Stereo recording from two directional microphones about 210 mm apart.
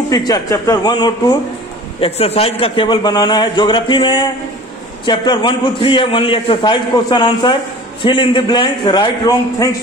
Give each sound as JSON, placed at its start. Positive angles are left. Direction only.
{"t": 0.1, "sound": "a man's voice", "side_deg": 15}